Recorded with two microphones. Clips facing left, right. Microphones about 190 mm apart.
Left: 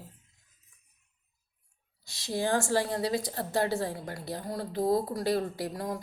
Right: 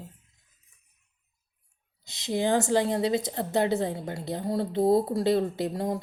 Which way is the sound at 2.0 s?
20° right (ahead or behind).